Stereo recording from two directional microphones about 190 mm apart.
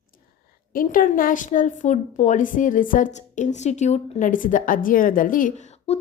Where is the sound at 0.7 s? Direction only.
45° left (ahead or behind).